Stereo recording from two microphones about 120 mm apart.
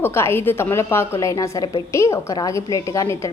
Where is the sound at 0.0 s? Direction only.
20° left (ahead or behind).